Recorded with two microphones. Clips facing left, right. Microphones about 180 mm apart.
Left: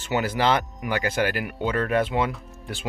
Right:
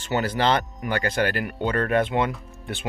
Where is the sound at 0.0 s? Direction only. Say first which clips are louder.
Even; 10° left (ahead or behind).